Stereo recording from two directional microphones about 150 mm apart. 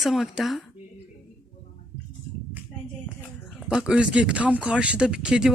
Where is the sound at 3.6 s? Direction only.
5° right (ahead or behind).